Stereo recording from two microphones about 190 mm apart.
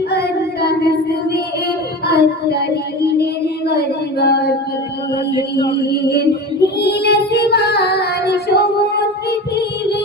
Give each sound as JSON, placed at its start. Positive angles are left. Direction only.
{"t": 0.1, "sound": "child singing", "side_deg": 60}
{"t": 2.0, "sound": "child singing", "side_deg": 60}
{"t": 5.9, "sound": "music", "side_deg": 60}